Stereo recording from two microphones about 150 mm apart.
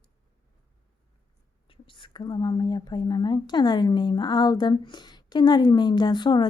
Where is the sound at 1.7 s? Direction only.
35° left (ahead or behind).